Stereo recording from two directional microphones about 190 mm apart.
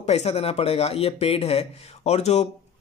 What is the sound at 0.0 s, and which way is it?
Speech, 35° left (ahead or behind).